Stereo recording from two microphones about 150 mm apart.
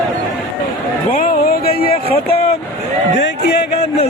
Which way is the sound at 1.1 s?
75° left (ahead or behind).